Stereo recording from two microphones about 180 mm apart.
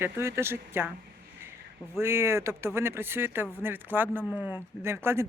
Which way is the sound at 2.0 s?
15° right (ahead or behind).